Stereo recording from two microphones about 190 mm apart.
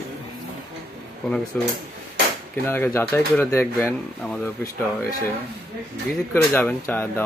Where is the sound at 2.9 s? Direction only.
10° left (ahead or behind).